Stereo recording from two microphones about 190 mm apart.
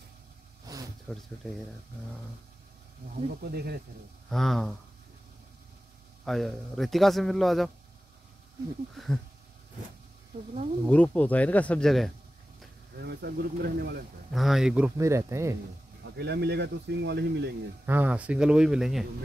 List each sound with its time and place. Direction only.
0.7 s a sound: 20° right (ahead or behind)
1.1 s a man's voice: centre (ahead or behind)
3.3 s speech: 55° right (ahead or behind)
4.3 s a man's voice: centre (ahead or behind)
6.2 s a man's voice: centre (ahead or behind)
8.9 s a man's voice: centre (ahead or behind)
10.9 s speech: 10° left (ahead or behind)
12.9 s speech: 60° right (ahead or behind)
14.3 s a man's voice: centre (ahead or behind)
15.0 s speech: 15° right (ahead or behind)
16.0 s speech: 60° right (ahead or behind)
17.8 s a man's voice: 10° right (ahead or behind)